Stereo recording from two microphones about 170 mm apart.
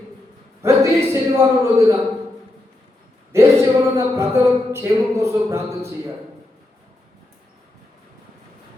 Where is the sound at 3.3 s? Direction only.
15° right (ahead or behind).